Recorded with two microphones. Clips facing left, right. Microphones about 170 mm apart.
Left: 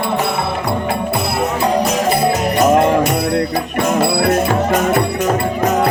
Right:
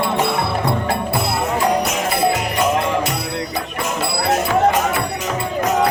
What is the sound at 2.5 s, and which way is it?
Jingle bell, 45° left (ahead or behind).